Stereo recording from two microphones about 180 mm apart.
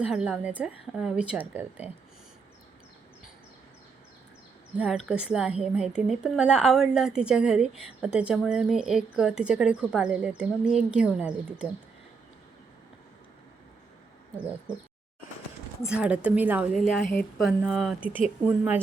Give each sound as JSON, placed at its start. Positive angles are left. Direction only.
{"t": 0.0, "sound": "a woman's voice", "side_deg": -5}
{"t": 4.8, "sound": "a woman's voice", "side_deg": -5}
{"t": 15.9, "sound": "a woman's voice", "side_deg": -5}
{"t": 17.1, "sound": "speech", "side_deg": 10}
{"t": 17.4, "sound": "a woman's voice", "side_deg": 0}